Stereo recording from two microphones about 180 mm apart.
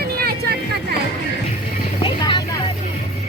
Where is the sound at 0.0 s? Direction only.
60° right (ahead or behind).